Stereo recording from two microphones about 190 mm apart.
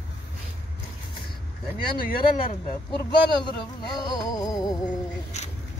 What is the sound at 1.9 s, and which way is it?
Speech, 45° left (ahead or behind).